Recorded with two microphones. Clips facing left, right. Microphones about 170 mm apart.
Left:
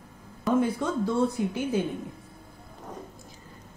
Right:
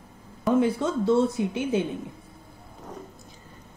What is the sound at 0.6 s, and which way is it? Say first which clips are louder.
A woman's voice: right 2 dB; 25° right (ahead or behind).